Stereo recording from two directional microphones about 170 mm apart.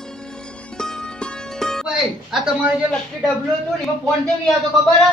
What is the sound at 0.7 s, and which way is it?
Music, 5° left (ahead or behind).